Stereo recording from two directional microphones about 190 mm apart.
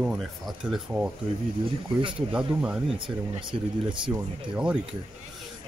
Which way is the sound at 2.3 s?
5° right (ahead or behind).